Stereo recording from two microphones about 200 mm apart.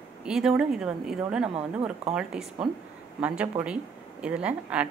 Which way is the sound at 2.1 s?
5° right (ahead or behind).